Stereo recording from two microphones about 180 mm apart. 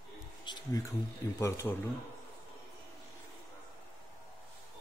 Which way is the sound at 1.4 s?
15° left (ahead or behind).